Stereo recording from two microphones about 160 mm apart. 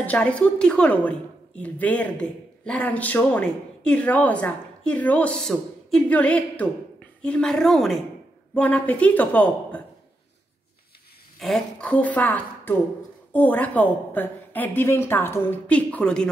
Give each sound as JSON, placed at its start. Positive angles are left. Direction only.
{"t": 0.0, "sound": "a woman's voice", "side_deg": 10}
{"t": 11.3, "sound": "a woman's voice", "side_deg": 0}